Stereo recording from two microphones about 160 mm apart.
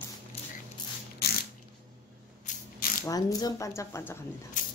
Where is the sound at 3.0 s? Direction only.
25° left (ahead or behind).